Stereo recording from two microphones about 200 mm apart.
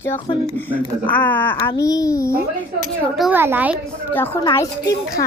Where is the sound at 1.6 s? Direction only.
20° left (ahead or behind).